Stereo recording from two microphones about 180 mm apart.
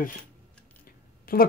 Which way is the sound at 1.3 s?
55° left (ahead or behind).